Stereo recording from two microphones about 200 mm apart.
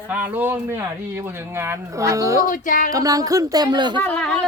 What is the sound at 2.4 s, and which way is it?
Music, 40° left (ahead or behind).